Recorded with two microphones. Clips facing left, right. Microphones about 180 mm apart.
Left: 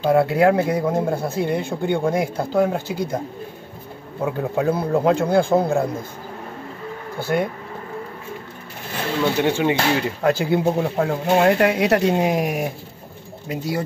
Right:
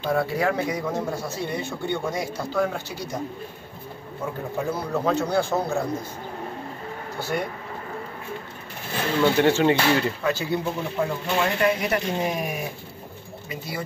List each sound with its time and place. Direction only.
0.1 s speech: 65° left (ahead or behind)
4.2 s speech: 70° left (ahead or behind)
7.2 s speech: 55° left (ahead or behind)
9.4 s speech: 15° left (ahead or behind)
10.2 s speech: 55° left (ahead or behind); by 13.8 s 80° left